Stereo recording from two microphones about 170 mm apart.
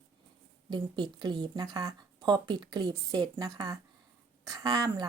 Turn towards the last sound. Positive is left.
turn(degrees=-25)  # may be behind; listen again after turning